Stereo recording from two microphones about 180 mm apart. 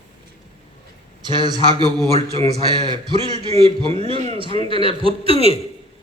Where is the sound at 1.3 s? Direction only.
25° right (ahead or behind).